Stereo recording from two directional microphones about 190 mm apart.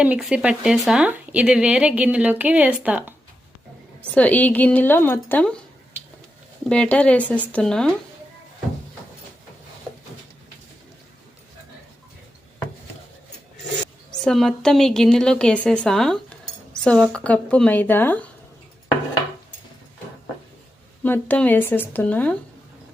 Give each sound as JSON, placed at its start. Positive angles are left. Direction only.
{"t": 0.0, "sound": "speech", "side_deg": -5}
{"t": 4.1, "sound": "a woman's voice", "side_deg": 10}
{"t": 6.7, "sound": "a woman's voice", "side_deg": 5}
{"t": 14.3, "sound": "a woman's voice", "side_deg": 0}
{"t": 21.0, "sound": "a woman's voice", "side_deg": 10}